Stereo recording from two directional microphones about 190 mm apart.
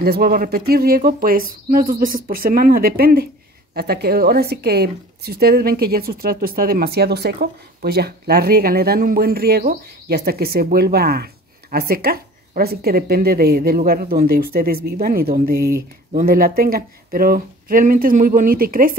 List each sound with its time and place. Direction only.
0.0 s a woman's voice: 55° right (ahead or behind)